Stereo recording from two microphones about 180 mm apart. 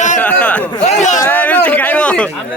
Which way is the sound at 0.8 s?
40° left (ahead or behind).